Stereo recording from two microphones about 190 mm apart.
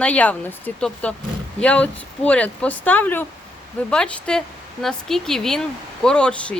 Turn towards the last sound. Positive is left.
turn(degrees=5)  # may be behind; listen again after turning